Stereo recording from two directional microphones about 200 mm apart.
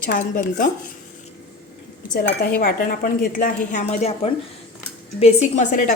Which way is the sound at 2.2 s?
45° left (ahead or behind).